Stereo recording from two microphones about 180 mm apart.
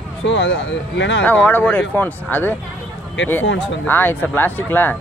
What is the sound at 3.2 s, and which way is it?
Speech, 90° left.